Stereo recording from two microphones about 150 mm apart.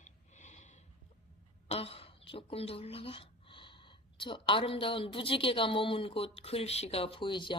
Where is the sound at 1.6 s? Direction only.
40° left (ahead or behind).